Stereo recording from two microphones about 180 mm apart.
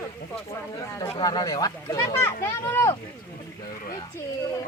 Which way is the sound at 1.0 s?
25° left (ahead or behind).